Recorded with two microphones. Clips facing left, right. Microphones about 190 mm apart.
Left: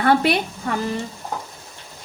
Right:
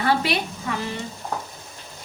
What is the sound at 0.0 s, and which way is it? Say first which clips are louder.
Speech: left 5 dB; 55° left (ahead or behind).